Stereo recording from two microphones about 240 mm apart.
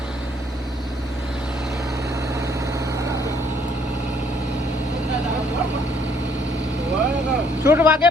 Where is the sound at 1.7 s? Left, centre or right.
Centre.